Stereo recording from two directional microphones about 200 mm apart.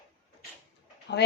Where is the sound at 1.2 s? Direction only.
55° left (ahead or behind).